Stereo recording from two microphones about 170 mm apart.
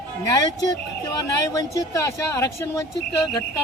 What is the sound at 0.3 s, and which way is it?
Speech, 20° left (ahead or behind).